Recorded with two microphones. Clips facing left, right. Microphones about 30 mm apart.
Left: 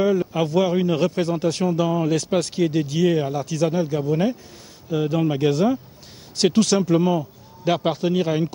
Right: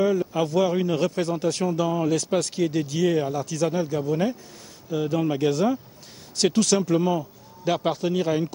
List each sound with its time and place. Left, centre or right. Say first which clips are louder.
0.0 s a man's voice: left 2 dB; centre